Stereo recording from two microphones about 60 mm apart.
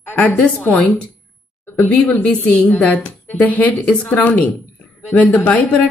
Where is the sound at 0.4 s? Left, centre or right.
Left.